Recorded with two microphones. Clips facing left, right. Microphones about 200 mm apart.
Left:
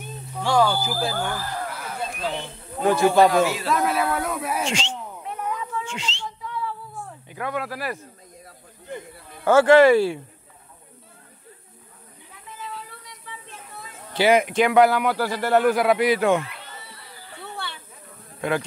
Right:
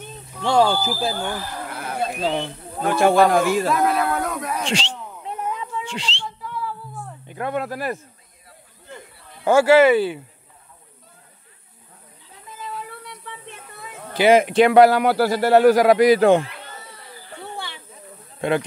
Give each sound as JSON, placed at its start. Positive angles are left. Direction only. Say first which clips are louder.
{"t": 0.4, "sound": "speech", "louder": "right 2 dB", "side_deg": -25}
{"t": 1.7, "sound": "a sound", "louder": "right 5 dB", "side_deg": -55}
{"t": 3.0, "sound": "a man's voice", "louder": "right 2 dB", "side_deg": -60}
{"t": 3.7, "sound": "speech", "louder": "right 2 dB", "side_deg": 5}
{"t": 4.6, "sound": "a man's voice", "louder": "right 2 dB", "side_deg": -35}
{"t": 5.5, "sound": "cat", "louder": "right 1 dB", "side_deg": -25}
{"t": 6.2, "sound": "a sound", "louder": "right 1 dB", "side_deg": 0}
{"t": 7.3, "sound": "speech", "louder": "right 3 dB", "side_deg": -30}
{"t": 9.4, "sound": "speech", "louder": "even", "side_deg": -10}
{"t": 12.5, "sound": "a sound", "louder": "right 4 dB", "side_deg": -45}
{"t": 13.2, "sound": "a sound", "louder": "right 3 dB", "side_deg": -60}
{"t": 14.1, "sound": "a man's voice", "louder": "right 4 dB", "side_deg": -25}
{"t": 18.4, "sound": "speech", "louder": "right 3 dB", "side_deg": -25}